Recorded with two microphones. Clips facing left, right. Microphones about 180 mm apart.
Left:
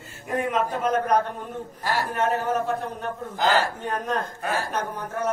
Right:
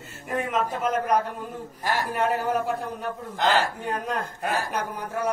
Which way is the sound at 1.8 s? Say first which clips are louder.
Even; 15° right (ahead or behind).